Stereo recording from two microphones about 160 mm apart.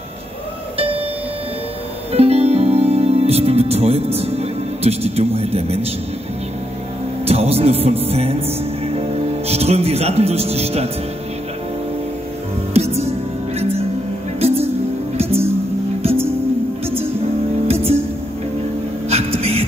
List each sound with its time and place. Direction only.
0.7 s music: 35° right (ahead or behind)
2.1 s music: 40° right (ahead or behind)
7.2 s music: 40° right (ahead or behind)
9.5 s speech: 40° right (ahead or behind)
12.7 s music: 40° right (ahead or behind)
17.6 s music: 40° right (ahead or behind)
19.0 s a sound: 40° right (ahead or behind)